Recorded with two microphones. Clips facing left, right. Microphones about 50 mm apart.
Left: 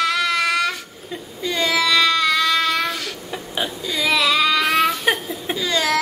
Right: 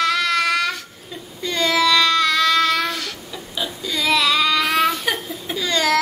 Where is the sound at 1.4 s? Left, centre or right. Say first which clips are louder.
Right 1 dB; centre.